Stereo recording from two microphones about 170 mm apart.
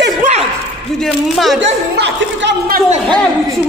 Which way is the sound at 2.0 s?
90° right.